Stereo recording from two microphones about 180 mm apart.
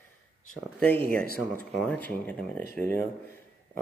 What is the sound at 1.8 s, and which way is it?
Speech, 10° left (ahead or behind).